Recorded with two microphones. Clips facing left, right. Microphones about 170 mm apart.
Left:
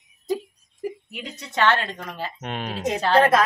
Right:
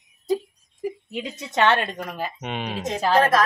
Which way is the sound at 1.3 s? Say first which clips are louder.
Right 1 dB; 20° right (ahead or behind).